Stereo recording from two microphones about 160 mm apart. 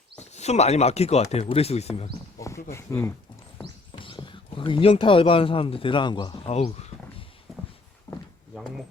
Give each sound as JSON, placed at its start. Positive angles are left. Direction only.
{"t": 0.2, "sound": "speech", "side_deg": 45}
{"t": 2.7, "sound": "speech", "side_deg": 15}
{"t": 4.0, "sound": "speech", "side_deg": 30}
{"t": 7.5, "sound": "a sound", "side_deg": 0}